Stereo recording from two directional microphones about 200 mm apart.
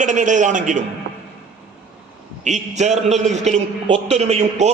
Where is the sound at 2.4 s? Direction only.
35° right (ahead or behind).